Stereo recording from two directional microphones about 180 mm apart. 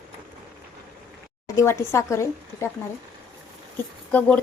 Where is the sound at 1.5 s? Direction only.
15° left (ahead or behind).